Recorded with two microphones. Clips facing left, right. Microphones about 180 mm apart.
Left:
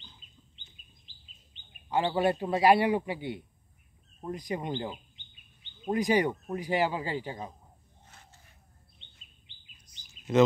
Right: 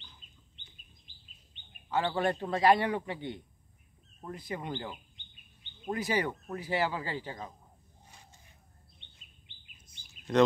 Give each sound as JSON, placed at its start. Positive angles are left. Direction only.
{"t": 1.9, "sound": "speech", "side_deg": 15}
{"t": 5.9, "sound": "speech", "side_deg": 15}
{"t": 8.1, "sound": "a sound", "side_deg": -15}
{"t": 10.3, "sound": "speech", "side_deg": 5}